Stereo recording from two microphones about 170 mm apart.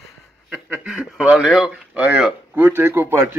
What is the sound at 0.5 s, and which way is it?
Speech, 5° right (ahead or behind).